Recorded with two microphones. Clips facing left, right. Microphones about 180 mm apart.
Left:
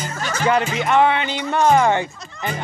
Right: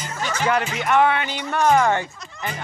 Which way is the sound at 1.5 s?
20° left (ahead or behind).